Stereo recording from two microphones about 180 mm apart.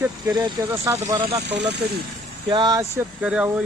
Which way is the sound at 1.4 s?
70° right (ahead or behind).